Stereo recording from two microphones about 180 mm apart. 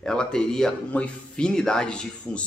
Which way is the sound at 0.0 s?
5° left (ahead or behind).